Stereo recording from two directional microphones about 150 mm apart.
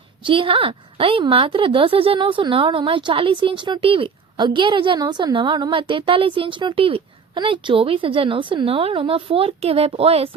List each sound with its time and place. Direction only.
0.3 s a woman's voice: 35° right (ahead or behind)